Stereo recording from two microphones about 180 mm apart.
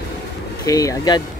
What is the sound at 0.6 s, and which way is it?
Speech, 20° left (ahead or behind).